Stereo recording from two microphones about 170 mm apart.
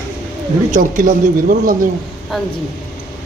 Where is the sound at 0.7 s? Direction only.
50° right (ahead or behind).